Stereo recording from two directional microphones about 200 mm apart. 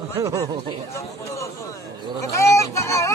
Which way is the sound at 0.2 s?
15° right (ahead or behind).